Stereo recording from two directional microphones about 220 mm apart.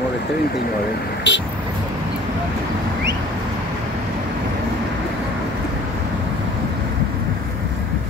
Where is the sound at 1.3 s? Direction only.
55° left (ahead or behind).